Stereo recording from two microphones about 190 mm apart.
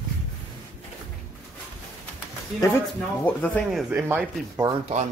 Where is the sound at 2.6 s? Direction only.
10° left (ahead or behind).